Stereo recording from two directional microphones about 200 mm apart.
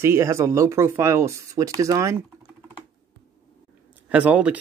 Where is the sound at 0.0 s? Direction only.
15° right (ahead or behind).